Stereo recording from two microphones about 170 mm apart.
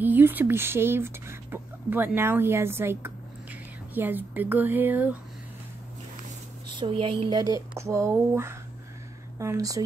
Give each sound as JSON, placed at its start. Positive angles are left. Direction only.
{"t": 0.0, "sound": "speech", "side_deg": -10}
{"t": 6.8, "sound": "speech", "side_deg": -30}